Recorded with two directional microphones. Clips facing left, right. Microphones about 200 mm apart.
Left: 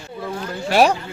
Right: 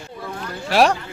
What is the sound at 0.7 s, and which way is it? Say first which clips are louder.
Speech: left 1 dB; centre (ahead or behind).